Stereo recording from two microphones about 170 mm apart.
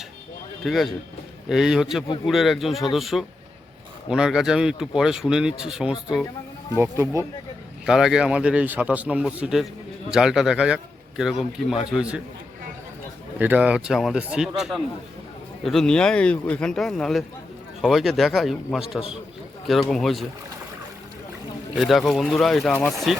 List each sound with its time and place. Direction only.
0.6 s a man's voice: centre (ahead or behind)
6.7 s a man's voice: 15° right (ahead or behind)
7.9 s a man's voice: centre (ahead or behind)
13.4 s speech: 10° right (ahead or behind)
21.8 s speech: centre (ahead or behind)